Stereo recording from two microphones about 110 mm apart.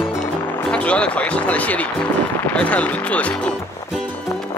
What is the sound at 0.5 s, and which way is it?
Speech, 10° left (ahead or behind).